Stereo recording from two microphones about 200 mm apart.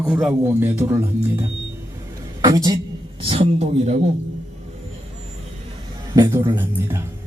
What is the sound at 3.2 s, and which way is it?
Speech, 30° right (ahead or behind).